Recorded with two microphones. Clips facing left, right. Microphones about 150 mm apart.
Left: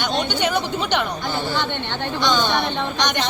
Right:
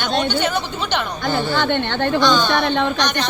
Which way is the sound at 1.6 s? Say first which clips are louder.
Right 6 dB; 75° right (ahead or behind).